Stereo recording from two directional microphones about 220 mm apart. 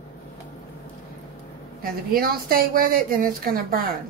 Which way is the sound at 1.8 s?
40° right (ahead or behind).